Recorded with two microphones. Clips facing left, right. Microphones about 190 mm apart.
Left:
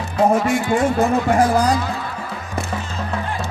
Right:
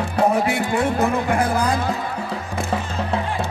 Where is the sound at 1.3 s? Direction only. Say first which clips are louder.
Left 4 dB; 55° right (ahead or behind).